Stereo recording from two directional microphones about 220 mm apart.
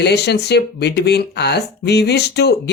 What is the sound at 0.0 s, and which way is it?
Speech, 50° left (ahead or behind).